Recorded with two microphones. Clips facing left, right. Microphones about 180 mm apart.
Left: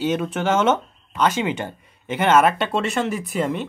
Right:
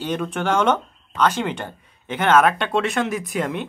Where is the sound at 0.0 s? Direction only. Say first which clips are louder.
Left 2 dB; 5° left (ahead or behind).